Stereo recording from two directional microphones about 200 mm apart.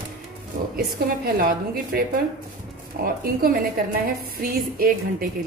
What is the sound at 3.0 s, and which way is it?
Speech, 50° right (ahead or behind).